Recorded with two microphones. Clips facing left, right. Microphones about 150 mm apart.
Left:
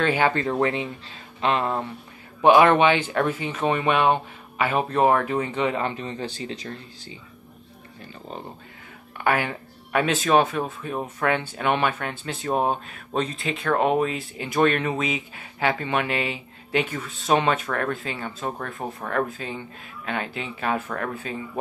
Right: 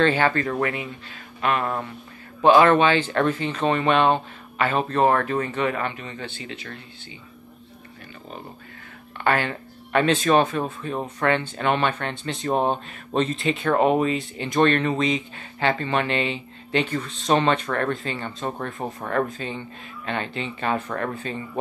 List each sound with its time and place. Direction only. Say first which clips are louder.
0.0 s speech: right 1 dB; 15° left (ahead or behind)
2.4 s speech: even; 15° left (ahead or behind)
5.9 s speech: left 3 dB; 35° left (ahead or behind)
9.2 s speech: right 1 dB; 10° left (ahead or behind)